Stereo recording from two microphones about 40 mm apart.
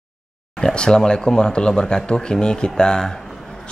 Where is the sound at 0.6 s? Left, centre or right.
Centre.